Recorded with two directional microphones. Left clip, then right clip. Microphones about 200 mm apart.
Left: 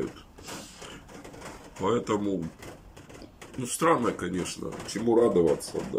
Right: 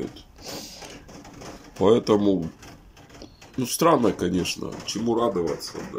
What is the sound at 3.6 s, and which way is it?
Speech, 15° right (ahead or behind).